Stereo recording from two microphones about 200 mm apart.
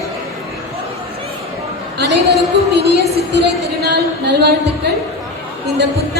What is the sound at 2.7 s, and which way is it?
Music, 55° right (ahead or behind).